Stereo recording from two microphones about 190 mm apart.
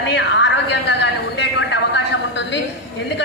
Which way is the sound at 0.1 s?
70° left (ahead or behind).